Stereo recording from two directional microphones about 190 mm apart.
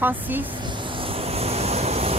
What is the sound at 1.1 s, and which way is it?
Vehicle, 30° right (ahead or behind).